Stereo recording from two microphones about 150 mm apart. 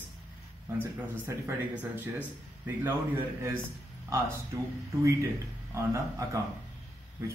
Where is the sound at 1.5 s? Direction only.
15° right (ahead or behind).